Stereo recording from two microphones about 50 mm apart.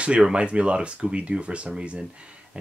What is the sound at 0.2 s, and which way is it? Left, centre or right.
Speech, right.